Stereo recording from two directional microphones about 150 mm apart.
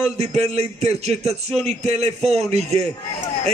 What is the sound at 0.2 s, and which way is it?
A man's voice, 45° right (ahead or behind).